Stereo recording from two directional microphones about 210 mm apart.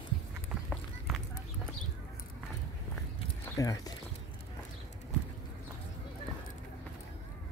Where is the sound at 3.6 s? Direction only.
15° left (ahead or behind).